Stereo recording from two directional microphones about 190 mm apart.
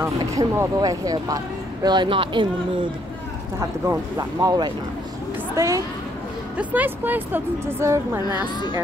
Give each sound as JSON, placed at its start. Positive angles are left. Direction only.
{"t": 0.0, "sound": "speech", "side_deg": -15}
{"t": 3.5, "sound": "speech", "side_deg": -15}